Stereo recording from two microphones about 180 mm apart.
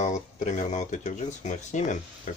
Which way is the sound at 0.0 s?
40° left (ahead or behind).